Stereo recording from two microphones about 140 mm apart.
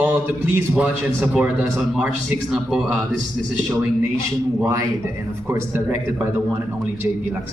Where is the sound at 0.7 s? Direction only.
10° right (ahead or behind).